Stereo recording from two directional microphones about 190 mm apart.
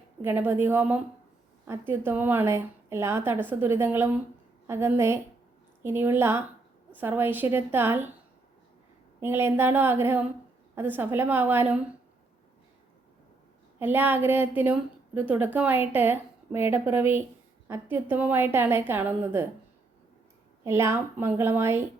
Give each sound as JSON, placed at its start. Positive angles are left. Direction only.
{"t": 0.2, "sound": "a woman's voice", "side_deg": -10}
{"t": 9.2, "sound": "a woman's voice", "side_deg": -10}
{"t": 13.7, "sound": "a woman's voice", "side_deg": -10}
{"t": 20.7, "sound": "a woman's voice", "side_deg": -15}